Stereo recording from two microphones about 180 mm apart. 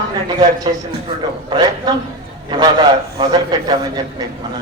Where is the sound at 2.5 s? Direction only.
25° right (ahead or behind).